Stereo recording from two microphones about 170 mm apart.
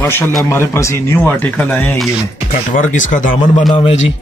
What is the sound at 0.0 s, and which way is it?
A man's voice, 15° left (ahead or behind).